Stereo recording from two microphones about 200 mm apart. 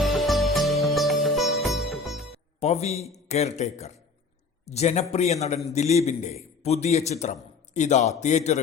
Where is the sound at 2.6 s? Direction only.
30° left (ahead or behind).